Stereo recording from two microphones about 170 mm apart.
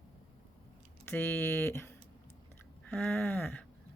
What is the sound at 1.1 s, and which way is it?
Speech, 10° left (ahead or behind).